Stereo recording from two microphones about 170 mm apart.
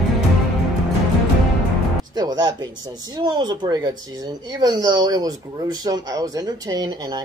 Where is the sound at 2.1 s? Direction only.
25° right (ahead or behind).